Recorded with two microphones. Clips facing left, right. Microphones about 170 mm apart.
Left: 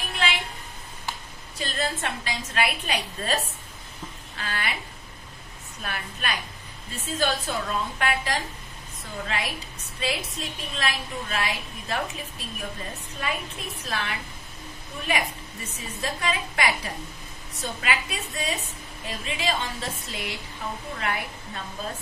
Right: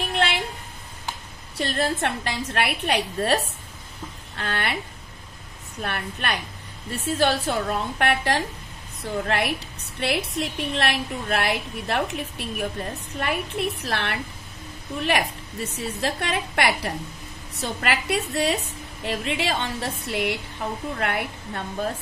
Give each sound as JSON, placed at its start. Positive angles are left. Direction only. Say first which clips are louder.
{"t": 0.1, "sound": "a sound", "louder": "right 3 dB", "side_deg": -65}
{"t": 1.6, "sound": "a woman's voice", "louder": "right 5 dB", "side_deg": -60}
{"t": 4.4, "sound": "a woman's voice", "louder": "right 4 dB", "side_deg": -60}
{"t": 5.8, "sound": "a woman's voice", "louder": "right 5 dB", "side_deg": -60}